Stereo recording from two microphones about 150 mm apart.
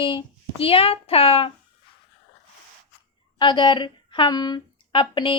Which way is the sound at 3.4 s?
30° left (ahead or behind).